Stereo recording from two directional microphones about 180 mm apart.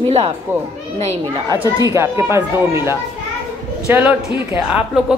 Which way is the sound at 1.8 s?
15° right (ahead or behind).